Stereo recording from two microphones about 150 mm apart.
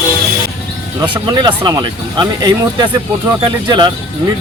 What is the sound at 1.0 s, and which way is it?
Speech, 30° right (ahead or behind).